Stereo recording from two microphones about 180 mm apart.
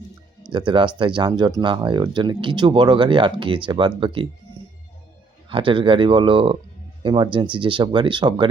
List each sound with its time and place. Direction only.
0.4 s speech: 25° right (ahead or behind)
5.5 s speech: 30° right (ahead or behind)